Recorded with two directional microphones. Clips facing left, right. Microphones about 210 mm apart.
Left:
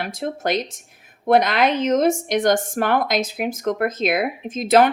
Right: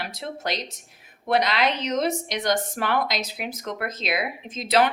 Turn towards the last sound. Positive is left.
turn(degrees=50)  # may be behind; listen again after turning